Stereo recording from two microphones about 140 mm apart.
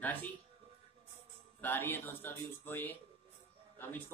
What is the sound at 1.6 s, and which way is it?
A man's voice, 15° left (ahead or behind).